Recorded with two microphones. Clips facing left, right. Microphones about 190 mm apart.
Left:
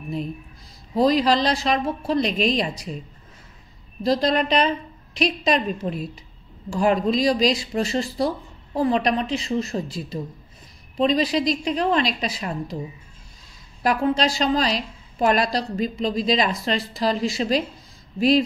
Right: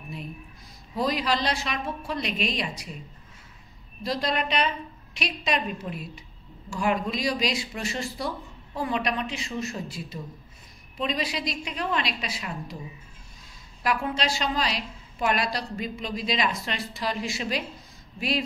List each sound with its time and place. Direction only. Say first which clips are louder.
0.9 s a woman's voice: left 8 dB; 35° left (ahead or behind)
4.0 s a woman's voice: left 8 dB; 40° left (ahead or behind)
11.0 s a woman's voice: left 9 dB; 35° left (ahead or behind)
13.8 s a woman's voice: left 6 dB; 40° left (ahead or behind)